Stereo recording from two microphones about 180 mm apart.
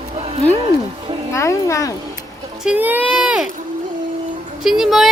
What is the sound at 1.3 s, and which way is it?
Speech, 15° left (ahead or behind).